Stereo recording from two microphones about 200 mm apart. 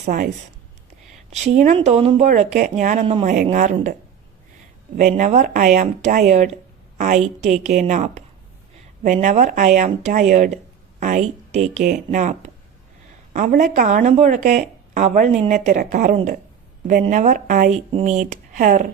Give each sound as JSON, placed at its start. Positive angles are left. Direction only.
{"t": 0.0, "sound": "speech", "side_deg": -45}
{"t": 1.3, "sound": "speech", "side_deg": -35}
{"t": 4.9, "sound": "speech", "side_deg": -40}